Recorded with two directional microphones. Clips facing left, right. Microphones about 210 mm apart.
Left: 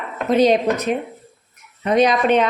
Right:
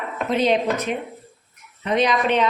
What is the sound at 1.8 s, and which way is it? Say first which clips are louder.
Speech: left 4 dB; 45° left (ahead or behind).